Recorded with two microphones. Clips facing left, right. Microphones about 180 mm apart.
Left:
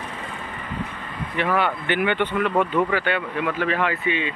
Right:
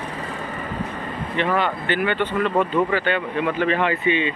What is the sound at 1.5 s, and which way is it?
Speech, 15° left (ahead or behind).